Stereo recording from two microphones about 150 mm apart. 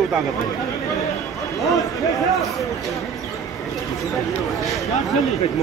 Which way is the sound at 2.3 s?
Centre (ahead or behind).